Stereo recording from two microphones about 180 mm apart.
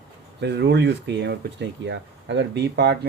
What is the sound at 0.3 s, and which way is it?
Speech, 70° right (ahead or behind).